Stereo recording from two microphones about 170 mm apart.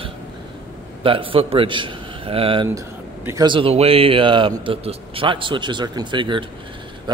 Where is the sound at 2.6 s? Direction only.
15° right (ahead or behind).